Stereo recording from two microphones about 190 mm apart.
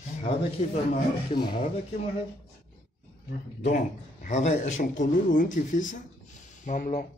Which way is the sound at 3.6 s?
40° left (ahead or behind).